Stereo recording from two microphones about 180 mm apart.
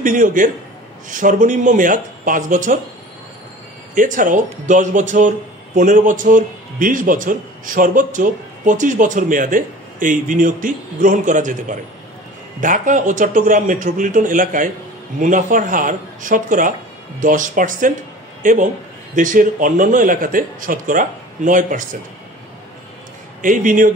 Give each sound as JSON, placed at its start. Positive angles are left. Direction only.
{"t": 0.0, "sound": "a man's voice", "side_deg": -50}
{"t": 3.9, "sound": "a man's voice", "side_deg": -50}
{"t": 12.5, "sound": "a man's voice", "side_deg": -45}
{"t": 23.4, "sound": "a man's voice", "side_deg": -45}